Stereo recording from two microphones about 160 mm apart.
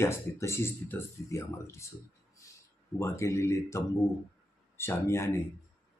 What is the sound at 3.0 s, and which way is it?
Speech, 20° left (ahead or behind).